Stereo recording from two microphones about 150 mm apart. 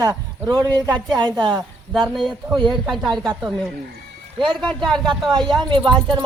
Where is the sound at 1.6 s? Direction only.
Centre (ahead or behind).